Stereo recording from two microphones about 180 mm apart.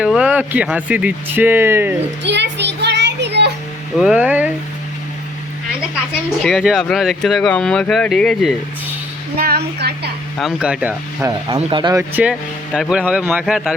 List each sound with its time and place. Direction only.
0.0 s speech: 5° right (ahead or behind)
2.2 s child singing: 75° right (ahead or behind)
3.9 s speech: 5° right (ahead or behind)
6.4 s speech: centre (ahead or behind)
9.4 s speech: 60° right (ahead or behind)
10.3 s speech: 5° right (ahead or behind)
11.4 s speech: 25° right (ahead or behind)
12.1 s speech: 5° right (ahead or behind)